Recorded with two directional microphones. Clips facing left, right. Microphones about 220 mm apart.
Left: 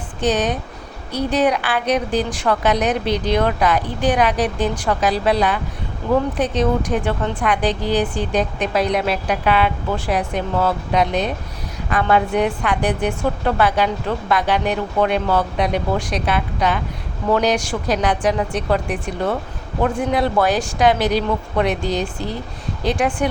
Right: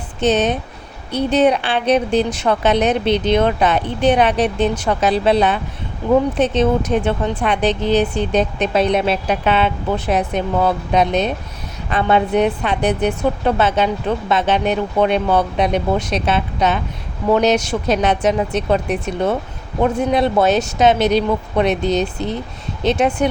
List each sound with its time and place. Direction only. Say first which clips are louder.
0.2 s a woman's voice: right 3 dB; 25° right (ahead or behind)
6.0 s a woman's voice: right 4 dB; 15° right (ahead or behind)